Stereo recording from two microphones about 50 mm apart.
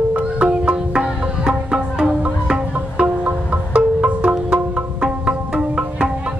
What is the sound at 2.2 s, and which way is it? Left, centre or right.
Music, right.